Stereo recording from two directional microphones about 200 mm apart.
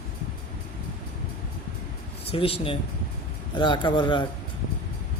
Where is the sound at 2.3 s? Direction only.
30° left (ahead or behind).